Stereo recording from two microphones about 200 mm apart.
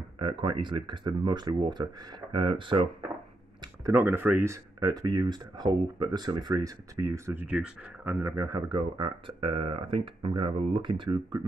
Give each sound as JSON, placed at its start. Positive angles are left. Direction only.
{"t": 0.2, "sound": "speech", "side_deg": -25}
{"t": 3.8, "sound": "speech", "side_deg": -10}